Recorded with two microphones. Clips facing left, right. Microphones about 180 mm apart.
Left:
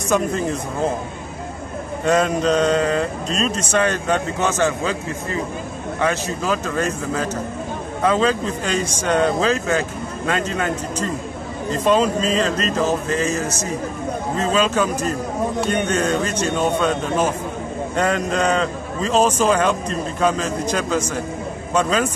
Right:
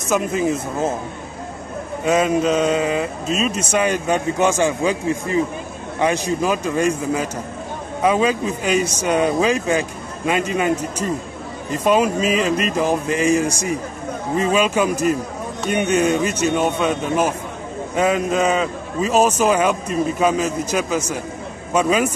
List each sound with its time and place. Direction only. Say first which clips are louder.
0.1 s speech: right 1 dB; 5° right (ahead or behind)
2.0 s speech: right 1 dB; 5° right (ahead or behind)